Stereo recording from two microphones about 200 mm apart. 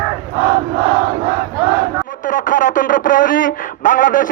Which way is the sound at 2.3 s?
40° left (ahead or behind).